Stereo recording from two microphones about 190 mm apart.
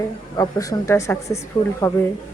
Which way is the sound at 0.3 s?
20° left (ahead or behind).